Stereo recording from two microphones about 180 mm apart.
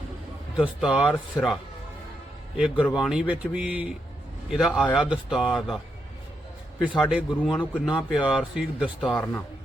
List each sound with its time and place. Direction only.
0.5 s speech: 5° right (ahead or behind)
1.4 s speech: 15° left (ahead or behind)
2.6 s speech: 5° right (ahead or behind)
6.8 s speech: 5° right (ahead or behind)